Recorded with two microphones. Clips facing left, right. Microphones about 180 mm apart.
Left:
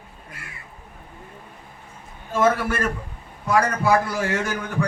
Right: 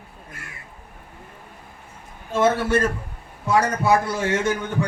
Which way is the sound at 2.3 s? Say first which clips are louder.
Right 2 dB; 25° right (ahead or behind).